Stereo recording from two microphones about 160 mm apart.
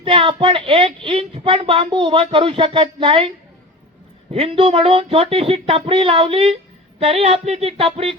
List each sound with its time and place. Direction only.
0.0 s speech: 35° right (ahead or behind)